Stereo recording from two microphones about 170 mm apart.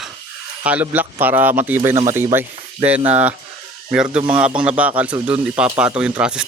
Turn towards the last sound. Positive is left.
turn(degrees=-5)  # may be behind; listen again after turning